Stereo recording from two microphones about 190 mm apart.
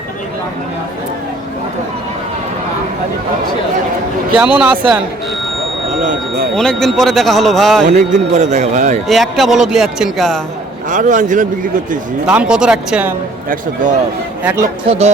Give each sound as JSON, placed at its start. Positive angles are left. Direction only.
{"t": 4.4, "sound": "a man's voice", "side_deg": -5}
{"t": 6.1, "sound": "a sound", "side_deg": -50}
{"t": 6.6, "sound": "a man's voice", "side_deg": 5}
{"t": 7.9, "sound": "a man's voice", "side_deg": -40}
{"t": 9.0, "sound": "a man's voice", "side_deg": 0}
{"t": 10.8, "sound": "speech", "side_deg": -40}
{"t": 12.2, "sound": "a man's voice", "side_deg": -5}
{"t": 14.8, "sound": "a man's voice", "side_deg": -35}